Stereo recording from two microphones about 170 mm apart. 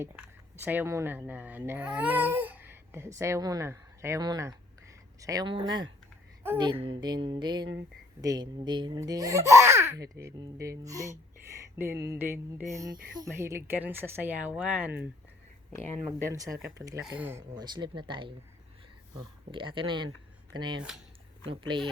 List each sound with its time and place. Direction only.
0.0 s speech: 10° right (ahead or behind)
16.2 s speech: 20° right (ahead or behind)
17.5 s speech: 25° right (ahead or behind)